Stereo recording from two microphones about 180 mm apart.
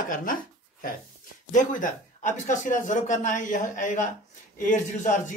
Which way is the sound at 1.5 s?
45° left (ahead or behind).